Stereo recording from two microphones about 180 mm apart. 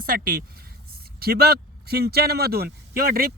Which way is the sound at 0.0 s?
50° right (ahead or behind).